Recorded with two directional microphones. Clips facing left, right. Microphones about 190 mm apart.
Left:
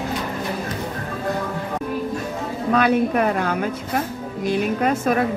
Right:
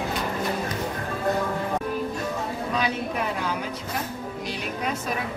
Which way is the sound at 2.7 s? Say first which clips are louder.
Left 12 dB; 60° left (ahead or behind).